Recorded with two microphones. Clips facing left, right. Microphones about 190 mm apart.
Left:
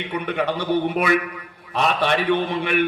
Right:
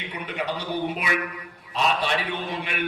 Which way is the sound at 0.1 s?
60° left (ahead or behind).